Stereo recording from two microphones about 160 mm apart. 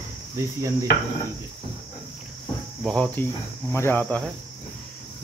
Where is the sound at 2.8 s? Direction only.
5° left (ahead or behind).